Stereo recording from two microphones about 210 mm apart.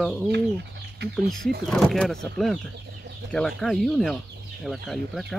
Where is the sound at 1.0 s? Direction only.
50° right (ahead or behind).